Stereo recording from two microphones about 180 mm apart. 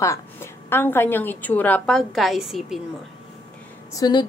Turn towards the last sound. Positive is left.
turn(degrees=25)  # may be behind; listen again after turning